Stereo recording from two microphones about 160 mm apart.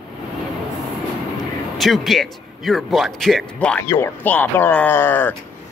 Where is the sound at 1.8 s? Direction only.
Centre (ahead or behind).